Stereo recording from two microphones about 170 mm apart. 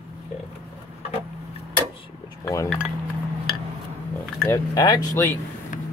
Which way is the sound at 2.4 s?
20° left (ahead or behind).